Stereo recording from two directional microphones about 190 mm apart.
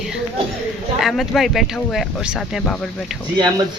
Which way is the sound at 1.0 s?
Centre (ahead or behind).